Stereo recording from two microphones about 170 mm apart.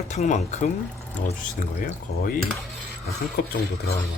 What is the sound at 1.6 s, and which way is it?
Speech, 55° left (ahead or behind).